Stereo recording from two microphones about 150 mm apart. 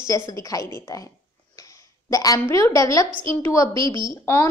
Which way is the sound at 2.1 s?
25° left (ahead or behind).